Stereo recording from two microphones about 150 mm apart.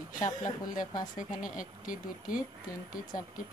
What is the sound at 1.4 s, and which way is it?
Speech, 65° left (ahead or behind).